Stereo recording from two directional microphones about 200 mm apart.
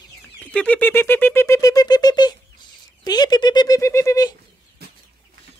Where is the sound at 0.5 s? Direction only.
5° left (ahead or behind).